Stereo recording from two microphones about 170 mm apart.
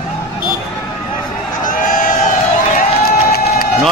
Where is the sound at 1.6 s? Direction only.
50° left (ahead or behind).